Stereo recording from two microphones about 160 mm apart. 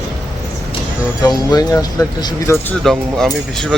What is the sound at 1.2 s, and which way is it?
Speech, 25° left (ahead or behind).